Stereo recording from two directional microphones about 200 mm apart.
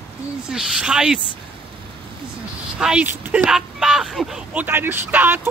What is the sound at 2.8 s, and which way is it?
Speech, 5° right (ahead or behind).